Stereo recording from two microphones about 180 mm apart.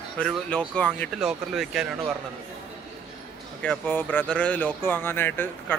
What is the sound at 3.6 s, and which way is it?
Speech, 5° left (ahead or behind).